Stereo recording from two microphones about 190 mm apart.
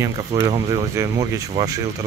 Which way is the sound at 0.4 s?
20° right (ahead or behind).